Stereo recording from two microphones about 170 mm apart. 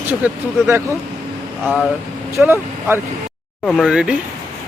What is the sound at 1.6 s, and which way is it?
Speech, centre (ahead or behind).